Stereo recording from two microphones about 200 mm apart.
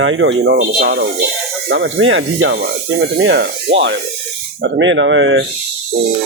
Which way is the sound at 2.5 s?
55° right (ahead or behind).